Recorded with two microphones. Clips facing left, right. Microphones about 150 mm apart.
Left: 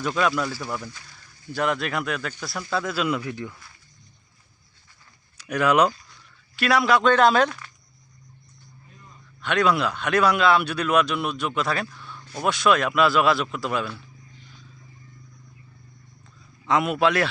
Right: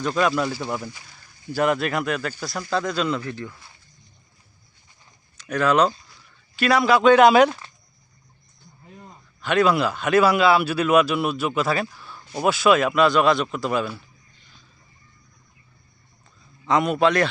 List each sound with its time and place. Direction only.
0.0 s speech: centre (ahead or behind)
0.4 s speech: 20° right (ahead or behind)
1.5 s speech: 5° right (ahead or behind); by 3.5 s 15° left (ahead or behind)
3.5 s speech: 25° right (ahead or behind)
5.4 s speech: 15° left (ahead or behind)
6.6 s speech: centre (ahead or behind)
9.4 s speech: centre (ahead or behind)
11.9 s a sound: 5° right (ahead or behind)
12.3 s speech: 5° right (ahead or behind)
16.6 s speech: centre (ahead or behind)